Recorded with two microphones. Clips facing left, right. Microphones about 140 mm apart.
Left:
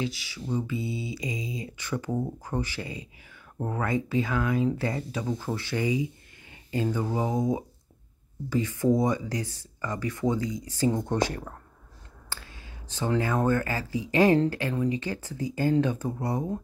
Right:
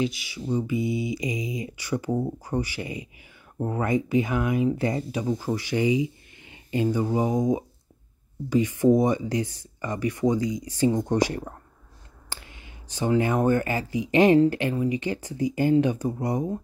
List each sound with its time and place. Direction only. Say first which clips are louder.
0.0 s speech: right 5 dB; 15° right (ahead or behind)